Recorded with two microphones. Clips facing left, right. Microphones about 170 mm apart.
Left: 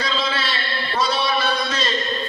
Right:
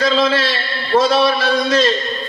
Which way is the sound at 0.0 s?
90° right.